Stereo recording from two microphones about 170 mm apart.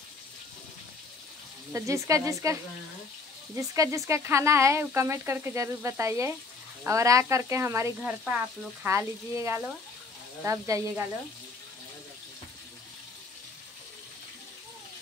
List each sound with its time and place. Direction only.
1.7 s speech: 15° right (ahead or behind)